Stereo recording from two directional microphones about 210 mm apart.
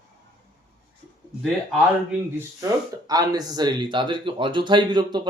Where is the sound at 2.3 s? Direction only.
15° right (ahead or behind).